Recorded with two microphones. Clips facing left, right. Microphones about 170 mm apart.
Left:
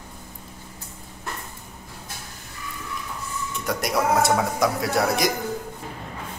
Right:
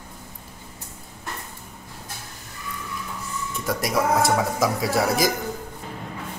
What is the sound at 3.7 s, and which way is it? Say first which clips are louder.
A man's voice: even; centre (ahead or behind).